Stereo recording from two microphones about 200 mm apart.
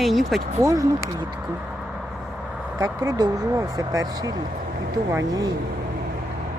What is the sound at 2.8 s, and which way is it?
Speech, 20° right (ahead or behind).